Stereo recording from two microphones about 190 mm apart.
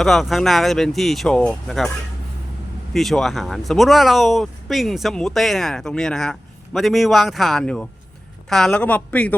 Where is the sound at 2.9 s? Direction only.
Centre (ahead or behind).